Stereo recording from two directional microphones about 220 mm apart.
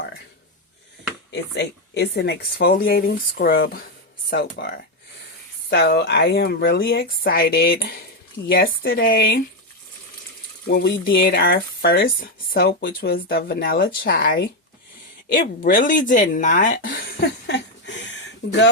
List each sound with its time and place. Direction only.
1.3 s speech: 50° left (ahead or behind)
10.7 s speech: 50° left (ahead or behind)